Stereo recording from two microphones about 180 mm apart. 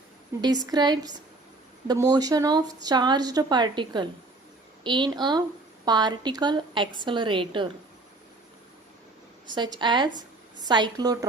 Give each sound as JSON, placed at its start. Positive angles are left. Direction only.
{"t": 0.4, "sound": "a woman's voice", "side_deg": -20}
{"t": 9.6, "sound": "a woman's voice", "side_deg": -25}